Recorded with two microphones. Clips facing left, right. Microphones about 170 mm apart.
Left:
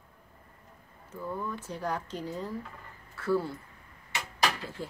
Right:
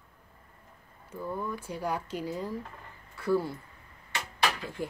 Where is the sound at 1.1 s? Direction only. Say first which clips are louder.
Right 1 dB; 10° right (ahead or behind).